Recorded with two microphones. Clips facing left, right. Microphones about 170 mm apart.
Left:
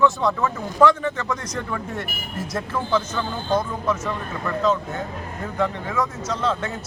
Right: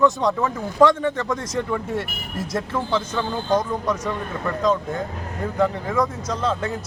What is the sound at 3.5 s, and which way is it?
Speech, 10° right (ahead or behind).